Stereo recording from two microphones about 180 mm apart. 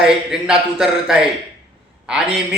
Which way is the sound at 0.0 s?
5° right (ahead or behind).